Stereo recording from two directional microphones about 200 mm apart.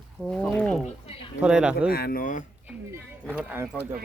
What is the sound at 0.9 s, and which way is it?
Speech, 30° left (ahead or behind).